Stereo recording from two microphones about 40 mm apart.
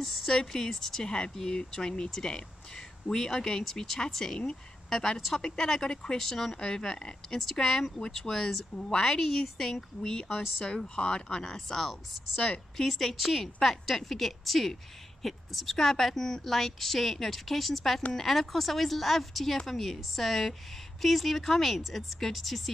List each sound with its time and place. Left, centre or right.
0.4 s a woman's voice: centre
7.2 s a woman's voice: centre
11.0 s a woman's voice: left; by 22.6 s centre